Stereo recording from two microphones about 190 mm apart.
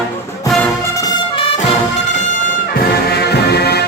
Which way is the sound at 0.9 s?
25° left (ahead or behind).